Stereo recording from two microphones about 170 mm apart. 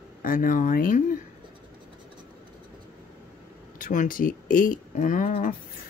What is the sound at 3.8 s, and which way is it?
Speech, 50° left (ahead or behind).